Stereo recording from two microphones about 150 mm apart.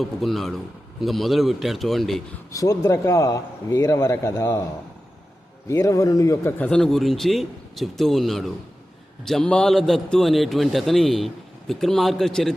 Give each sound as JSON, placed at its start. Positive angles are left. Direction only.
{"t": 0.0, "sound": "a man's voice", "side_deg": 0}
{"t": 2.5, "sound": "speech", "side_deg": 20}
{"t": 5.6, "sound": "speech", "side_deg": 20}
{"t": 6.6, "sound": "a man's voice", "side_deg": 5}